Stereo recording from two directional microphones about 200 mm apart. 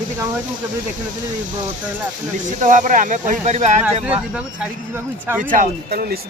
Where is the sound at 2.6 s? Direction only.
40° right (ahead or behind).